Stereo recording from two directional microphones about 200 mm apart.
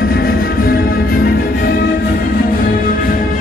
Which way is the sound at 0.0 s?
50° left (ahead or behind).